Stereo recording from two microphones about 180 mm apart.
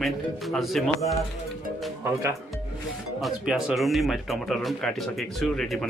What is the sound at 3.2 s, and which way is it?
Speech, centre (ahead or behind).